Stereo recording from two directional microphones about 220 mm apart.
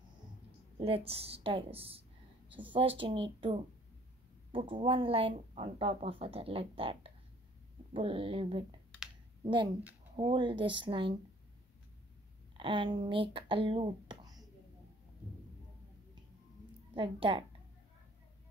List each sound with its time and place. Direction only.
0.7 s speech: 25° right (ahead or behind)
12.5 s speech: 20° right (ahead or behind)
16.9 s speech: 25° right (ahead or behind)